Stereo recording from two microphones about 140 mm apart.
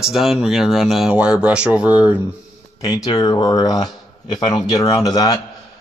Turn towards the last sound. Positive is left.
turn(degrees=25)  # may be behind; listen again after turning